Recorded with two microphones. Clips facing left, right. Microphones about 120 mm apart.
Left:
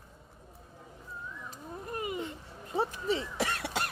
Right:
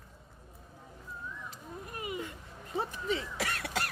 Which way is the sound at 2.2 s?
25° left (ahead or behind).